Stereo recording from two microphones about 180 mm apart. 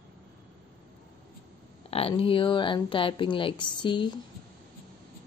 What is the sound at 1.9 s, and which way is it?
A woman's voice, 30° left (ahead or behind).